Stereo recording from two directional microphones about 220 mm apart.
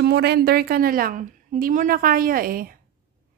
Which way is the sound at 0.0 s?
50° right (ahead or behind).